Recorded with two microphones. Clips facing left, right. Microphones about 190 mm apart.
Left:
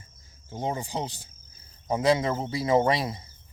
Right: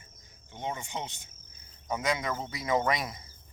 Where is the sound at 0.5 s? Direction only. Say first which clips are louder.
Left 6 dB; 35° left (ahead or behind).